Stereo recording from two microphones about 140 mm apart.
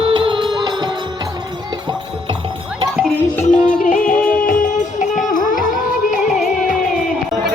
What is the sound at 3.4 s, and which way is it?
Music, 65° left (ahead or behind).